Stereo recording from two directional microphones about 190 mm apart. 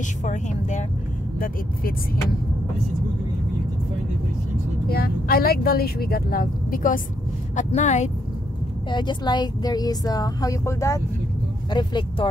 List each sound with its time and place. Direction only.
0.2 s speech: 40° left (ahead or behind)
4.8 s speech: 50° left (ahead or behind)
8.9 s speech: 25° left (ahead or behind)